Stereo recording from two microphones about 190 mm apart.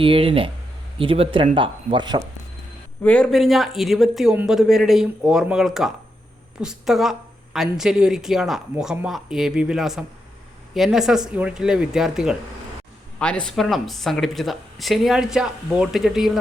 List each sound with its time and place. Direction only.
0.0 s speech: 30° right (ahead or behind)
3.0 s a woman's voice: 5° left (ahead or behind)